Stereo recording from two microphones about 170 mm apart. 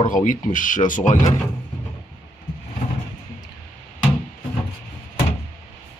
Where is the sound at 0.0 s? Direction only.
50° left (ahead or behind).